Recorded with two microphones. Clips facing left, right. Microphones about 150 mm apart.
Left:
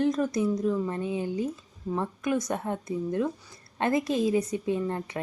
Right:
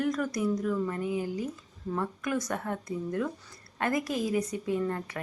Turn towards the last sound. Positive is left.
turn(degrees=20)  # may be behind; listen again after turning